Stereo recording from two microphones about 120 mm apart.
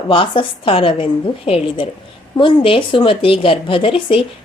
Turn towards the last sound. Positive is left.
turn(degrees=50)  # may be behind; listen again after turning